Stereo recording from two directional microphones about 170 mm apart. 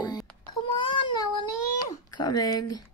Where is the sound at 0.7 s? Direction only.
30° left (ahead or behind).